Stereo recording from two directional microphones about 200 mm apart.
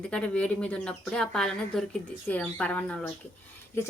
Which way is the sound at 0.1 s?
5° left (ahead or behind).